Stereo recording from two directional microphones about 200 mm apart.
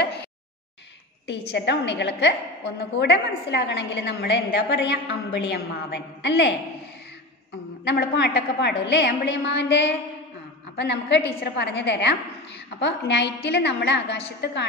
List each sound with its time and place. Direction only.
1.2 s a woman's voice: 60° left (ahead or behind)
7.8 s a woman's voice: 55° left (ahead or behind)